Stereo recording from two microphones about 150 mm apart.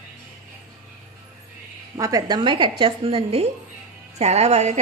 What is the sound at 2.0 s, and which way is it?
A woman's voice, 25° right (ahead or behind).